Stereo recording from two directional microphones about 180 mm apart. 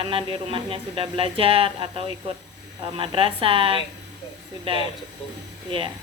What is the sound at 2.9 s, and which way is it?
Speech, 30° right (ahead or behind).